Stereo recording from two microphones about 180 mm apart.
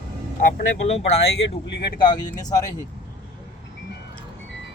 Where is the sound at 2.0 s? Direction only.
25° left (ahead or behind).